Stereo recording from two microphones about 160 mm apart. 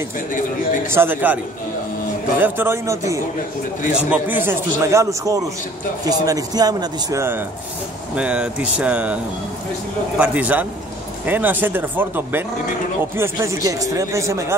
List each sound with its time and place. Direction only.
0.9 s speech: 10° right (ahead or behind)